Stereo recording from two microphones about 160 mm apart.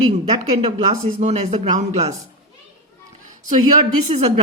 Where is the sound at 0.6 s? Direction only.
40° right (ahead or behind).